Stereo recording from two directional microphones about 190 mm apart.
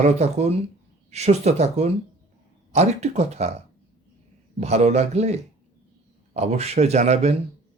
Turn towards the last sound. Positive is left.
turn(degrees=-35)  # may be behind; listen again after turning